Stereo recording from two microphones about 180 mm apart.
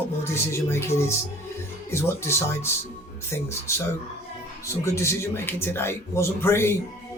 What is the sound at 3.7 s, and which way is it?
A man's voice, 15° left (ahead or behind).